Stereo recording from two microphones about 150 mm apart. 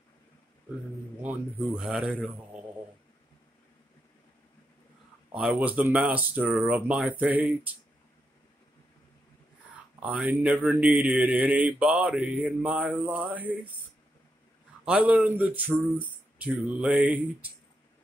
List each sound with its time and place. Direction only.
1.2 s speech: 10° right (ahead or behind)
5.3 s speech: 5° right (ahead or behind)
9.9 s speech: 5° right (ahead or behind)
14.9 s speech: 10° right (ahead or behind)